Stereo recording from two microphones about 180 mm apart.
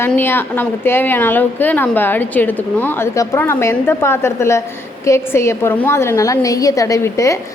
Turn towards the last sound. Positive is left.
turn(degrees=15)  # may be behind; listen again after turning